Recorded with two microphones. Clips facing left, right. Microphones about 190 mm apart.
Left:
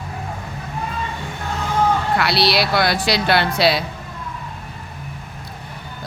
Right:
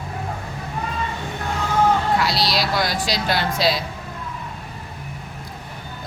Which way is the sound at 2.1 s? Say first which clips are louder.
Left 3 dB; 65° left (ahead or behind).